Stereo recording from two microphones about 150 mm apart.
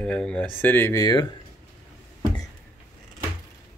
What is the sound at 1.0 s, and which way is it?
Speech, 25° left (ahead or behind).